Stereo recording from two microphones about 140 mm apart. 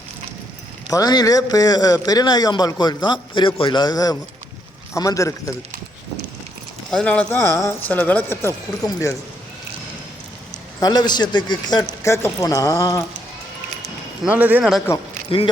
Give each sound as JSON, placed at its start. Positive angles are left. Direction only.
{"t": 0.9, "sound": "a man's voice", "side_deg": 25}
{"t": 6.9, "sound": "speech", "side_deg": 10}
{"t": 10.8, "sound": "a man's voice", "side_deg": 30}
{"t": 12.0, "sound": "a man's voice", "side_deg": 20}
{"t": 14.3, "sound": "speech", "side_deg": -10}